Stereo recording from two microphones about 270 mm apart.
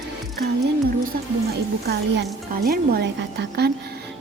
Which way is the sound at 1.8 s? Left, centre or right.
Right.